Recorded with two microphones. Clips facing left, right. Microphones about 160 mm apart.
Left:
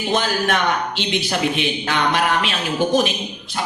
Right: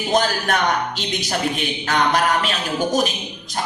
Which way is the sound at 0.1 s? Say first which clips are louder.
Right 1 dB; 40° right (ahead or behind).